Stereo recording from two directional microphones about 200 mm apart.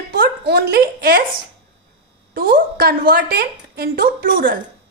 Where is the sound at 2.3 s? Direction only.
50° right (ahead or behind).